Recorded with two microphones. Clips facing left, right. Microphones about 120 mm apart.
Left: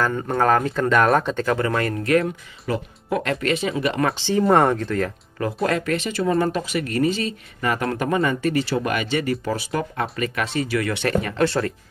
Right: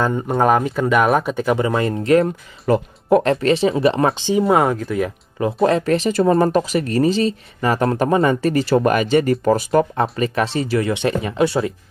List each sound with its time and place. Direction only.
0.4 s speech: 15° right (ahead or behind)
2.7 s speech: 40° right (ahead or behind)
4.3 s speech: 5° right (ahead or behind)
5.6 s speech: 30° right (ahead or behind)
10.9 s speech: 20° right (ahead or behind)